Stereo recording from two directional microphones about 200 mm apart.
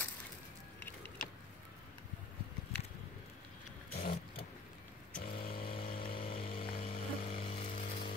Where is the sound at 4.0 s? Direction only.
50° left (ahead or behind).